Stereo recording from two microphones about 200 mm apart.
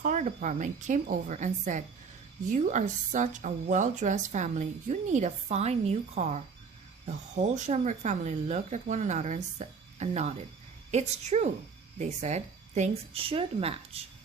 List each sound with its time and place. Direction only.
0.0 s cricket: 35° right (ahead or behind)
0.3 s a woman's voice: 40° right (ahead or behind)